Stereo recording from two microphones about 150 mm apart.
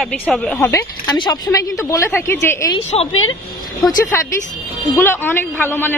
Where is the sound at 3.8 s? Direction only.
15° left (ahead or behind).